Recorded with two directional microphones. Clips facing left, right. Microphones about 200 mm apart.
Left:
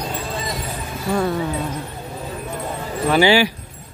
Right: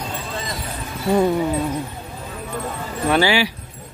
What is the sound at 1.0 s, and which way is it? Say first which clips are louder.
Speech: right 4 dB; 15° right (ahead or behind).